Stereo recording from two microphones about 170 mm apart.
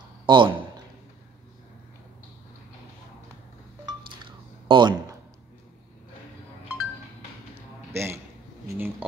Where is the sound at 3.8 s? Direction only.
25° right (ahead or behind).